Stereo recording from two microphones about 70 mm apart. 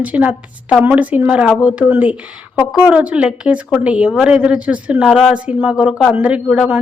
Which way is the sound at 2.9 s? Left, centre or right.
Centre.